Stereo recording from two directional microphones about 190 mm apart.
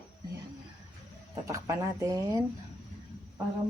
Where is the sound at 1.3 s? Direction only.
15° right (ahead or behind).